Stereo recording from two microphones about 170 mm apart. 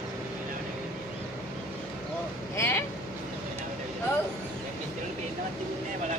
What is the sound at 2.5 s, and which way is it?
Vehicle, 15° left (ahead or behind).